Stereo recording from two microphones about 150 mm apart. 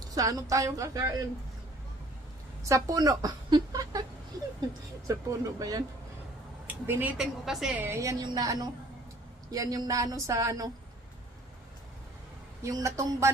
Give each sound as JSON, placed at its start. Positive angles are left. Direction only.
{"t": 0.1, "sound": "a woman's voice", "side_deg": -25}
{"t": 2.6, "sound": "a woman's voice", "side_deg": -20}
{"t": 5.0, "sound": "a woman's voice", "side_deg": -25}
{"t": 6.7, "sound": "a woman's voice", "side_deg": -10}
{"t": 7.9, "sound": "a woman's voice", "side_deg": -20}
{"t": 12.6, "sound": "a woman's voice", "side_deg": -20}